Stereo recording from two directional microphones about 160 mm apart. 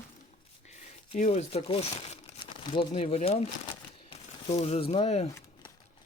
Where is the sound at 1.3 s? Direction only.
40° left (ahead or behind).